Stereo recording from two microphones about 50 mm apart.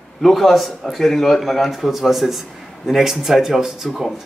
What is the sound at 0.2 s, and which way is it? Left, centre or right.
Speech, centre.